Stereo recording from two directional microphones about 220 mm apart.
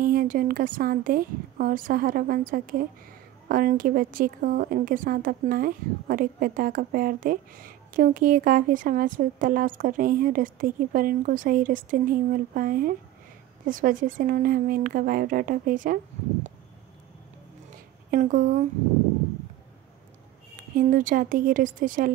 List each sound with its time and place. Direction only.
0.0 s speech: 40° right (ahead or behind)
18.1 s speech: 35° right (ahead or behind)
20.7 s speech: 40° right (ahead or behind)